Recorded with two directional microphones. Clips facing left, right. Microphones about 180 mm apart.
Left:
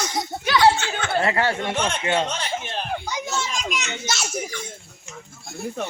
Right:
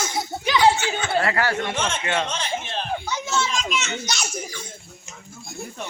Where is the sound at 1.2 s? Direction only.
25° left (ahead or behind).